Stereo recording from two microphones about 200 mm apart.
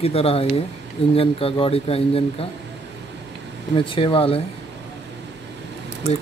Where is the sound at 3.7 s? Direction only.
25° left (ahead or behind).